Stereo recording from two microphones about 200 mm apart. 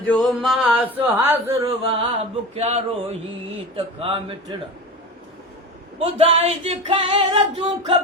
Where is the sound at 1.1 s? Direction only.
10° right (ahead or behind).